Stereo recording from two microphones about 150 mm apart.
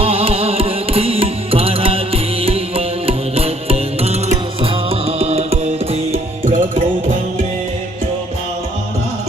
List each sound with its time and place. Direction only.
0.0 s music: 40° right (ahead or behind)